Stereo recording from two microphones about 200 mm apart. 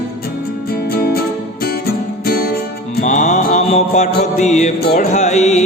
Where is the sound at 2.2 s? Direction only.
50° left (ahead or behind).